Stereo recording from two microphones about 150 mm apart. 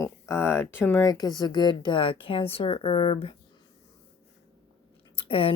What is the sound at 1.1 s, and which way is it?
Speech, 25° left (ahead or behind).